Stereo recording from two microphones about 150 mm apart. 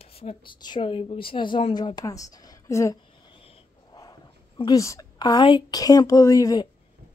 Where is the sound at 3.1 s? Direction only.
35° left (ahead or behind).